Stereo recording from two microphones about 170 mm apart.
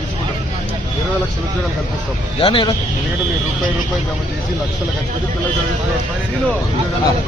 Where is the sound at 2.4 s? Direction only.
30° left (ahead or behind).